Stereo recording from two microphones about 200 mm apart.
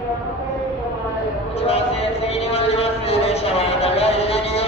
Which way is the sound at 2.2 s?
30° left (ahead or behind).